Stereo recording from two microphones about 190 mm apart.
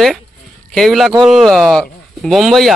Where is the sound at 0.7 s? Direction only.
Centre (ahead or behind).